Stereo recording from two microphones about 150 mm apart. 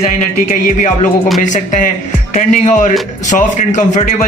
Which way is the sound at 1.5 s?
55° left (ahead or behind).